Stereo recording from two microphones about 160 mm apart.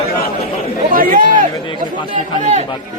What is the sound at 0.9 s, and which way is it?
Chatter, 60° right (ahead or behind).